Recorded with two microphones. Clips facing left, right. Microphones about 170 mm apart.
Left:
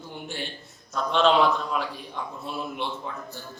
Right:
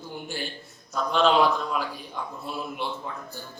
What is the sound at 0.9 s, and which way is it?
A man's voice, centre (ahead or behind).